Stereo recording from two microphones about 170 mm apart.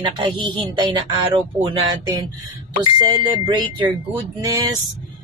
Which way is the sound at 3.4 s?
25° right (ahead or behind).